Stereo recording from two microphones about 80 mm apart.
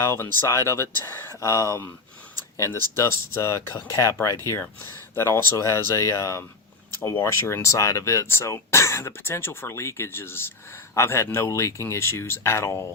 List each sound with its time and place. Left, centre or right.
0.0 s speech: left
4.6 s speech: left